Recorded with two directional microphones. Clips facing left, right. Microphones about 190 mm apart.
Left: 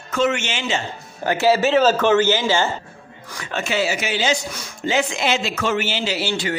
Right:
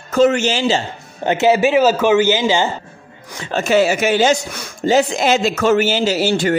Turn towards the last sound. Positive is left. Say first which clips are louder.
# right 7 dB
turn(degrees=-45)  # may be behind; listen again after turning